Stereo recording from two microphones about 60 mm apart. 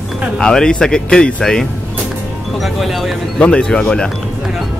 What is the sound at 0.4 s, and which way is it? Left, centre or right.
Speech, centre.